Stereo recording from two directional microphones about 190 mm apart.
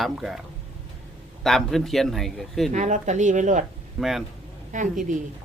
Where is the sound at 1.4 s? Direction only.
Centre (ahead or behind).